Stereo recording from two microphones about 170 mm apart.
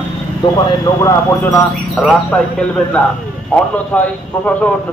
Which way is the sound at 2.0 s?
Centre (ahead or behind).